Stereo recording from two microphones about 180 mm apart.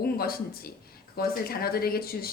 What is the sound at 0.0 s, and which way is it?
Speech, 55° left (ahead or behind).